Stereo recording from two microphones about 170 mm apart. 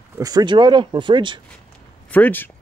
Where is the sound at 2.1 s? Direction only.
10° left (ahead or behind).